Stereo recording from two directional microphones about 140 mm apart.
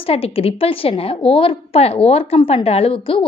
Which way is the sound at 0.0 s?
45° left (ahead or behind).